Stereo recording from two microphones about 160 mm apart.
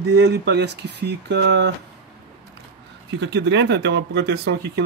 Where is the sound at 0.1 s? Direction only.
90° right.